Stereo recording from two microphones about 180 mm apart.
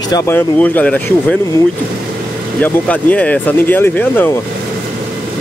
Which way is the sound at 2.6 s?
10° left (ahead or behind).